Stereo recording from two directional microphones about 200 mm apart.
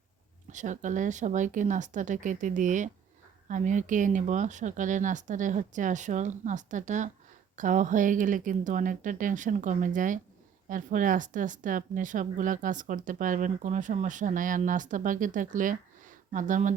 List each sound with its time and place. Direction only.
0.5 s a woman's voice: 40° right (ahead or behind)